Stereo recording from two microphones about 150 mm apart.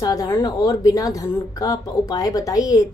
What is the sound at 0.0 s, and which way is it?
A woman's voice, 25° left (ahead or behind).